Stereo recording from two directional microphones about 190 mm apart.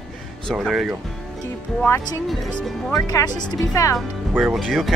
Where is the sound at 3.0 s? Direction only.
20° left (ahead or behind).